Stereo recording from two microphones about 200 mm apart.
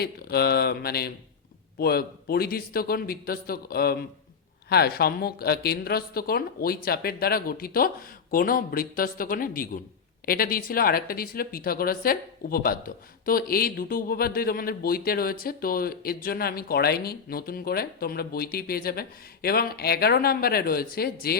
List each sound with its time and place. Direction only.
0.0 s speech: 50° left (ahead or behind)